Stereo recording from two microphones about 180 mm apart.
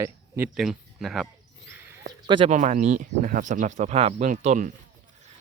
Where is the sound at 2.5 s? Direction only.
40° right (ahead or behind).